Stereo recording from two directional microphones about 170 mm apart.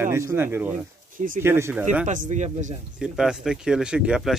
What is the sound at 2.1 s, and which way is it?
Speech, 50° right (ahead or behind).